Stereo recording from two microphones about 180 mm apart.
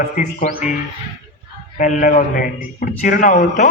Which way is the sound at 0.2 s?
50° left (ahead or behind).